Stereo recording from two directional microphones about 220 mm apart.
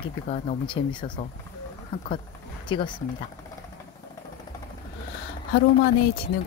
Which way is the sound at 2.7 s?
20° left (ahead or behind).